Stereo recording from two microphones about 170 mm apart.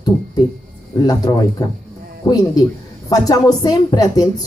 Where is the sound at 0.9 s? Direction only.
25° left (ahead or behind).